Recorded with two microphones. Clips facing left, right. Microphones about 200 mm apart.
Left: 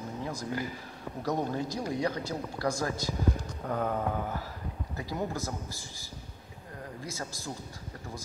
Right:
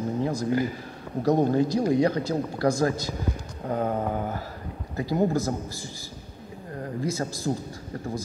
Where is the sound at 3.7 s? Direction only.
30° right (ahead or behind).